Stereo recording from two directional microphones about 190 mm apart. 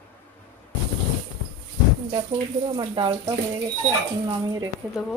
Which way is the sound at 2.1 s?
30° right (ahead or behind).